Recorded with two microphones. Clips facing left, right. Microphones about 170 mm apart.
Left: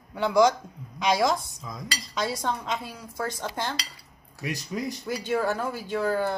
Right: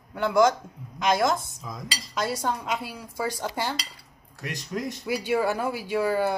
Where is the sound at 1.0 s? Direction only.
Centre (ahead or behind).